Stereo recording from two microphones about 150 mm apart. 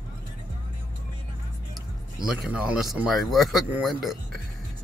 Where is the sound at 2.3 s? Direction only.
5° right (ahead or behind).